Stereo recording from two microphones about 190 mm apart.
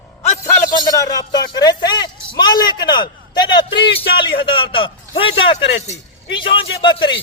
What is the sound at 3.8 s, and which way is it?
Speech, 60° left (ahead or behind).